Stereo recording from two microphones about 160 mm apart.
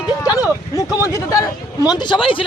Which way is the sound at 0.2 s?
20° left (ahead or behind).